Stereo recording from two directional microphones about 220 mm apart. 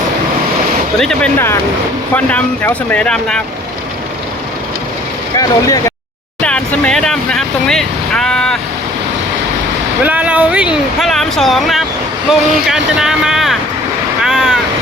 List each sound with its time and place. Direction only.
0.9 s speech: 5° left (ahead or behind)
5.4 s speech: 15° left (ahead or behind)
6.4 s speech: 5° left (ahead or behind)
10.0 s speech: 5° right (ahead or behind)